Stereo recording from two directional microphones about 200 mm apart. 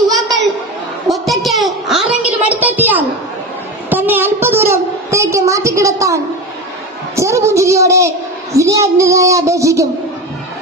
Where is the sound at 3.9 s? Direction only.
10° right (ahead or behind).